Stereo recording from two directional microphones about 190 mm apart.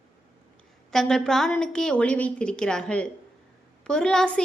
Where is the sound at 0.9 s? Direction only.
5° left (ahead or behind).